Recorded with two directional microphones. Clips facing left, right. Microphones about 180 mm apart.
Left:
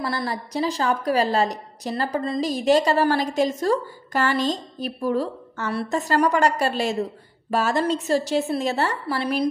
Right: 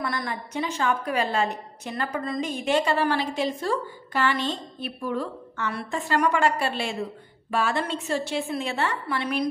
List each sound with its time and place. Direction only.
0.0 s a woman's voice: 30° left (ahead or behind)